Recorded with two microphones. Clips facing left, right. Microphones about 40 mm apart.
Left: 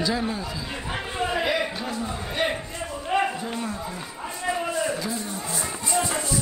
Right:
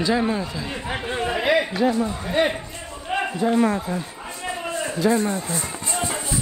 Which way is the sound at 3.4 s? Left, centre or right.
Right.